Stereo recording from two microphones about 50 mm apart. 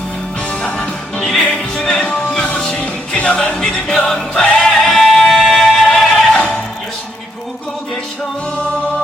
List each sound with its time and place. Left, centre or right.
1.7 s music: centre